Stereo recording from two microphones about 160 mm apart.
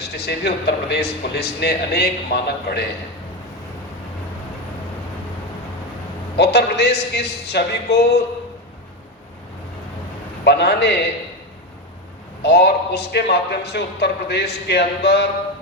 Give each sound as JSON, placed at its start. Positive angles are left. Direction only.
{"t": 0.0, "sound": "a man's voice", "side_deg": 90}
{"t": 6.3, "sound": "a man's voice", "side_deg": 90}
{"t": 10.4, "sound": "a man's voice", "side_deg": 90}
{"t": 12.4, "sound": "a man's voice", "side_deg": 90}